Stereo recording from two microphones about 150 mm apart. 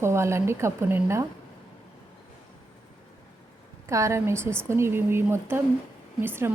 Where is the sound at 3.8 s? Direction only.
20° right (ahead or behind).